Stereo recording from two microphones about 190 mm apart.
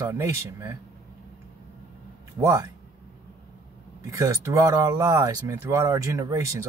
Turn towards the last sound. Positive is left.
turn(degrees=-15)  # may be behind; listen again after turning